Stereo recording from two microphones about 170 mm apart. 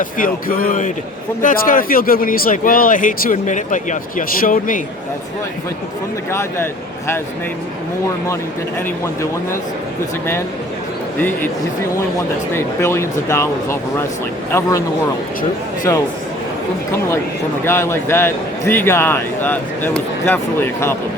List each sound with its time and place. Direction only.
0.0 s a man's voice: 55° left (ahead or behind)
11.2 s a man's voice: 10° left (ahead or behind)
12.5 s a man's voice: 15° left (ahead or behind)
15.9 s a man's voice: 20° left (ahead or behind)
17.7 s a man's voice: 15° left (ahead or behind)